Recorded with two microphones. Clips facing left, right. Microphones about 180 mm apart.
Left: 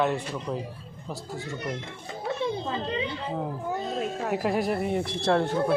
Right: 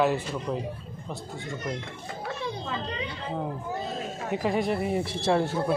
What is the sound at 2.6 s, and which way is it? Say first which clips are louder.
Speech: left 3 dB; 25° left (ahead or behind).